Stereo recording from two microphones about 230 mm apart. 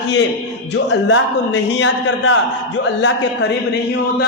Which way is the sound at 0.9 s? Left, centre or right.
Left.